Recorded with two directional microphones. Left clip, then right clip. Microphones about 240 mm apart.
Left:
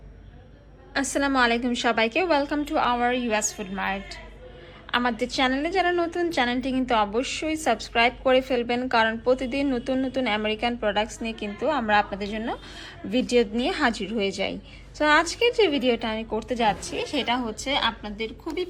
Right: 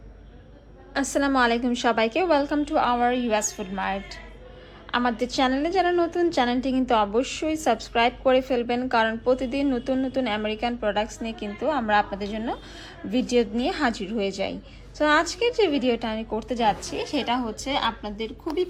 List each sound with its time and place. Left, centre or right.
0.9 s a woman's voice: centre